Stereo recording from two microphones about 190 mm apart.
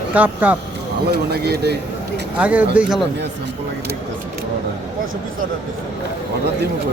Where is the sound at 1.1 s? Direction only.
55° right (ahead or behind).